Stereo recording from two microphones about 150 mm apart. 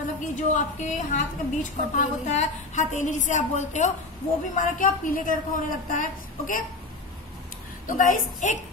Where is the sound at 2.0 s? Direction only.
55° left (ahead or behind).